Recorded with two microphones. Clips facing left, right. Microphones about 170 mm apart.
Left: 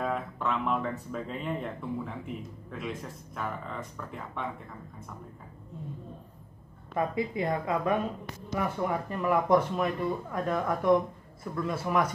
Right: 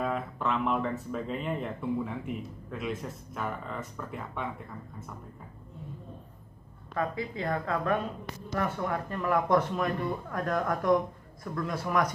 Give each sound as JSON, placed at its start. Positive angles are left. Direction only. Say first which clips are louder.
{"t": 0.0, "sound": "speech", "louder": "even", "side_deg": 0}
{"t": 7.0, "sound": "speech", "louder": "left 3 dB", "side_deg": 20}